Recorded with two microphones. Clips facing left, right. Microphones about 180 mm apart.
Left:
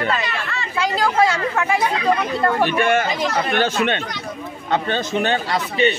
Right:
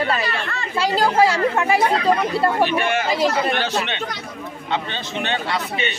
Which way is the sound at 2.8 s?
50° left (ahead or behind).